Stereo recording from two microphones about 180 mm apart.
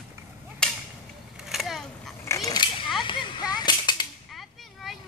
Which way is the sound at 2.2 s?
15° left (ahead or behind).